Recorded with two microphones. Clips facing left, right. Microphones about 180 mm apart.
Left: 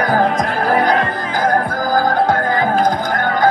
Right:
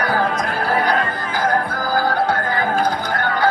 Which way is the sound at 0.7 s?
45° left (ahead or behind).